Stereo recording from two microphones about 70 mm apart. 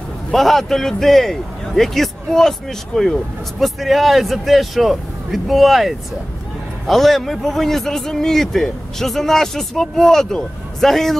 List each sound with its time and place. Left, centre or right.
0.3 s a man's voice: centre